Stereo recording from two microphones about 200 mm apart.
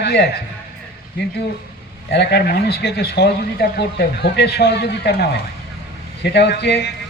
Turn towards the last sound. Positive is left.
turn(degrees=55)  # may be behind; listen again after turning